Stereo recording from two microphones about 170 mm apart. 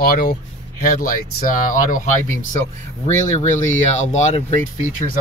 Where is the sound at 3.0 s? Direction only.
45° left (ahead or behind).